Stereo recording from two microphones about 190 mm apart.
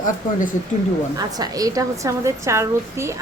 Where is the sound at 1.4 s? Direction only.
20° right (ahead or behind).